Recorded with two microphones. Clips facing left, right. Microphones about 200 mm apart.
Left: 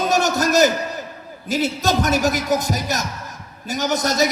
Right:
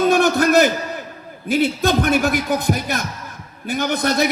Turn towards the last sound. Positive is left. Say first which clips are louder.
# right 1 dB
turn(degrees=-55)  # may be behind; listen again after turning